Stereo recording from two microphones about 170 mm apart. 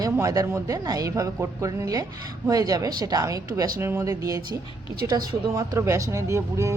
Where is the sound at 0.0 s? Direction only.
20° right (ahead or behind).